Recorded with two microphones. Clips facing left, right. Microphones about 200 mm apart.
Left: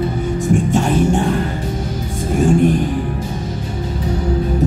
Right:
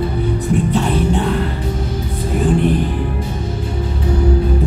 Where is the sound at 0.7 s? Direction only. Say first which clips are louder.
Left 2 dB; 45° left (ahead or behind).